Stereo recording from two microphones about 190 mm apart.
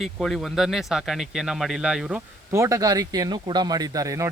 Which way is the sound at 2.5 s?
15° right (ahead or behind).